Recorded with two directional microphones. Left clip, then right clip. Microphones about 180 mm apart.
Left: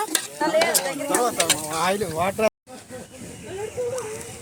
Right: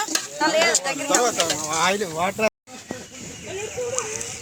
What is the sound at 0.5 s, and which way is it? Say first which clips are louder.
Speech: even; 25° left (ahead or behind).